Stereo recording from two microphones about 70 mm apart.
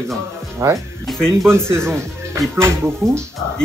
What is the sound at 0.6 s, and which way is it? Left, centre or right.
Speech, right.